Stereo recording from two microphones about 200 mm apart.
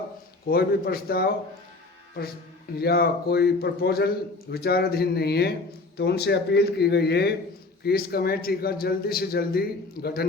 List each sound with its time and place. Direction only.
0.4 s speech: 50° left (ahead or behind)
2.7 s a man's voice: 50° left (ahead or behind)